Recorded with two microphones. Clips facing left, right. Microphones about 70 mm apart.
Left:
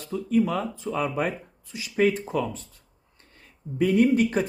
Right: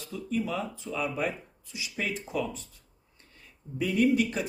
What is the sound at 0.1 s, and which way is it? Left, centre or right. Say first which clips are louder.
Speech: left 8 dB; left.